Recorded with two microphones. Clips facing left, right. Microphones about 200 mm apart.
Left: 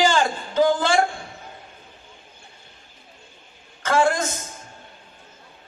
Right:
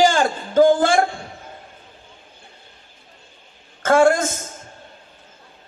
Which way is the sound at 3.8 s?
50° right (ahead or behind).